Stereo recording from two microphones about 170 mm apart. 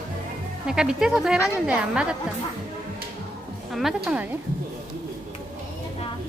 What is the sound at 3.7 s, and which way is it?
Speech, centre (ahead or behind).